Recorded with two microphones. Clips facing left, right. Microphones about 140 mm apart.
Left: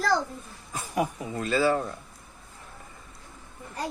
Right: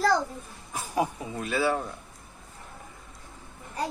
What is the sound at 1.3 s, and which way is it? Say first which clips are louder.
Speech: left 3 dB; 10° right (ahead or behind).